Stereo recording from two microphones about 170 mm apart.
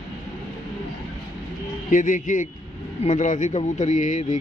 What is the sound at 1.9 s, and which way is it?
A man's voice, 50° left (ahead or behind).